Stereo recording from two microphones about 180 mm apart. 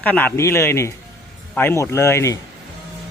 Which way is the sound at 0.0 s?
10° left (ahead or behind).